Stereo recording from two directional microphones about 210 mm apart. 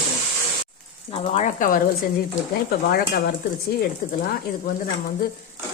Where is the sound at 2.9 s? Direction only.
45° left (ahead or behind).